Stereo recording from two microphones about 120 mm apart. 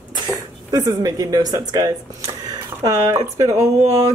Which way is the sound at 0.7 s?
30° right (ahead or behind).